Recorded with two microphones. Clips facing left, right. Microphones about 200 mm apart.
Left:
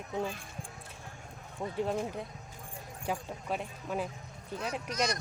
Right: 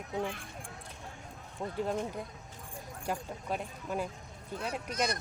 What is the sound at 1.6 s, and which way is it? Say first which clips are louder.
Speech: left 1 dB; 5° left (ahead or behind).